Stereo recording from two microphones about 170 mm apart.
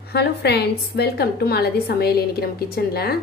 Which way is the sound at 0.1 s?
75° left (ahead or behind).